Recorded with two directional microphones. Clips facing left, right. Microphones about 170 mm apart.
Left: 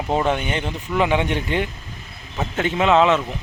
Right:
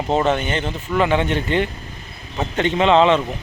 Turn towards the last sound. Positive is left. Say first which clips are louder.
# right 2 dB
turn(degrees=5)  # may be behind; listen again after turning